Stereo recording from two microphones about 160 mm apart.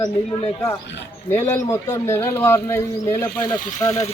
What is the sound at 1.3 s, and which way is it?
A man's voice, 15° left (ahead or behind).